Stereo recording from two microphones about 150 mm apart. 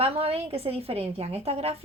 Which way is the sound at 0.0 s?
40° right (ahead or behind).